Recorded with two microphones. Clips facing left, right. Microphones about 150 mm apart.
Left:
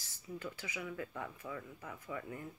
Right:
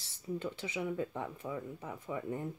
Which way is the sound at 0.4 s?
25° right (ahead or behind).